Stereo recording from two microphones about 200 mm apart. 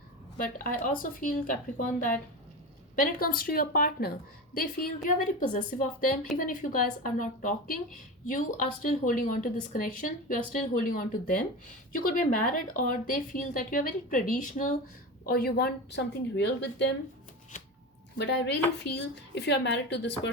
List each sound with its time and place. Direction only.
0.3 s a woman's voice: 45° left (ahead or behind); by 16.9 s 60° left (ahead or behind)
17.5 s a sound: 35° left (ahead or behind)
18.2 s speech: 60° left (ahead or behind)